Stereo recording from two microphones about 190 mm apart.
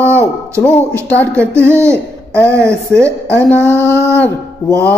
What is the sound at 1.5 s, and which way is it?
Speech, 15° right (ahead or behind).